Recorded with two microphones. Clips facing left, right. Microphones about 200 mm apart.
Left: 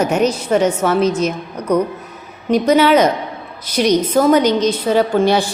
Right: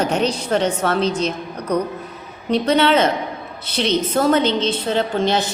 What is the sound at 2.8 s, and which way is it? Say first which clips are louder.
Speech: left 4 dB; 25° right (ahead or behind).